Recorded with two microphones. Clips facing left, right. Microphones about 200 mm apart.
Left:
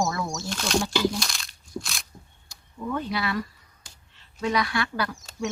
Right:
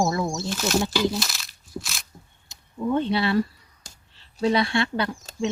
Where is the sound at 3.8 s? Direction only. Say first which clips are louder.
Right 4 dB; 35° right (ahead or behind).